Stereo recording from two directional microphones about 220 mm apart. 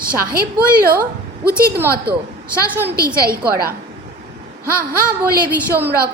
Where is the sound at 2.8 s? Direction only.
45° right (ahead or behind).